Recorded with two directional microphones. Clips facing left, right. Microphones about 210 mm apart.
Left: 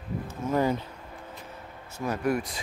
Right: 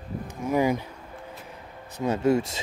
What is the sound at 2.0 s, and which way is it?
Speech, 25° right (ahead or behind).